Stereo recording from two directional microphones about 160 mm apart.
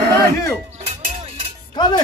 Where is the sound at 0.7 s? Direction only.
40° right (ahead or behind).